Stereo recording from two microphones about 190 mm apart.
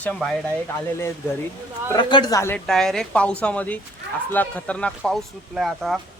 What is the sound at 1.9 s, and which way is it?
Speech, 25° left (ahead or behind).